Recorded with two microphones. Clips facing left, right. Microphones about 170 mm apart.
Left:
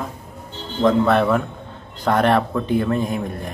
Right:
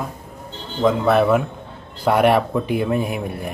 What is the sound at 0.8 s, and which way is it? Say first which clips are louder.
A man's voice: even; 5° right (ahead or behind).